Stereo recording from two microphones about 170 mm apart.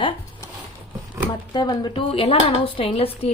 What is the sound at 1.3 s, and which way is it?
Speech, 25° left (ahead or behind).